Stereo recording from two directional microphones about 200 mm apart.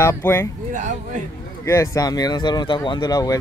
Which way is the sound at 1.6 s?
15° left (ahead or behind).